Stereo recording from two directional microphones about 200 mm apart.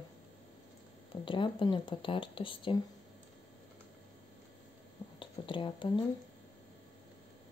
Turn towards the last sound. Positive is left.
turn(degrees=25)  # may be behind; listen again after turning